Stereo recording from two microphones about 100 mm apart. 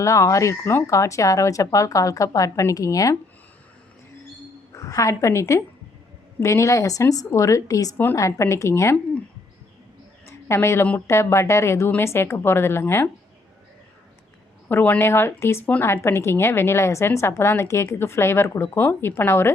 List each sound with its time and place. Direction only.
0.0 s speech: 30° left (ahead or behind)
4.7 s a woman's voice: 35° left (ahead or behind)
7.9 s a woman's voice: 20° left (ahead or behind)
8.2 s speech: 30° left (ahead or behind)
10.2 s a sound: 25° left (ahead or behind)
10.9 s a woman's voice: 25° left (ahead or behind)
14.7 s a woman's voice: 20° left (ahead or behind)